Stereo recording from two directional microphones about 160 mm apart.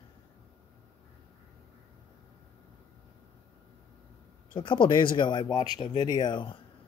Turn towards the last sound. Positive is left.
turn(degrees=30)  # may be behind; listen again after turning